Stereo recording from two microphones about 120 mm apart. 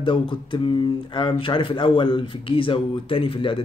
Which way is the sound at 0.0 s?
45° left (ahead or behind).